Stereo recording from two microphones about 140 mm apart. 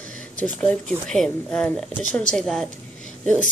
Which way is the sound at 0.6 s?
5° left (ahead or behind).